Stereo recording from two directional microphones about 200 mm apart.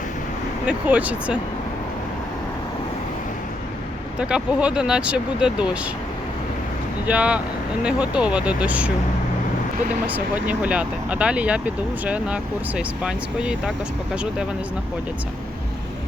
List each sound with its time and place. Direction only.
0.7 s speech: 5° right (ahead or behind)
4.2 s speech: 5° right (ahead or behind)
7.1 s speech: 5° right (ahead or behind)
10.1 s speech: 10° right (ahead or behind)